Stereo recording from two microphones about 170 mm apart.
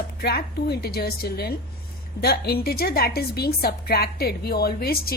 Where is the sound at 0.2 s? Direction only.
65° left (ahead or behind).